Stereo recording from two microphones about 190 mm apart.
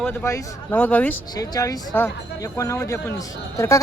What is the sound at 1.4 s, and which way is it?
Speech, 20° left (ahead or behind).